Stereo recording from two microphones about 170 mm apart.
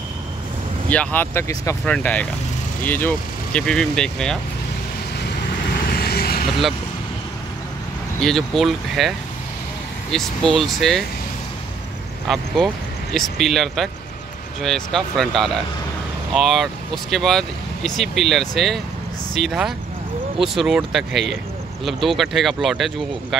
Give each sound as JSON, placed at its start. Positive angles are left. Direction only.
{"t": 0.8, "sound": "speech", "side_deg": 10}
{"t": 5.7, "sound": "vehicle", "side_deg": 65}
{"t": 8.2, "sound": "speech", "side_deg": 0}
{"t": 10.1, "sound": "speech", "side_deg": 0}
{"t": 12.3, "sound": "speech", "side_deg": 0}